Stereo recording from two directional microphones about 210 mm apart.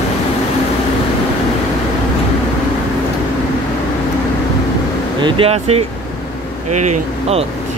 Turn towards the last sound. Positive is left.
turn(degrees=-30)  # may be behind; listen again after turning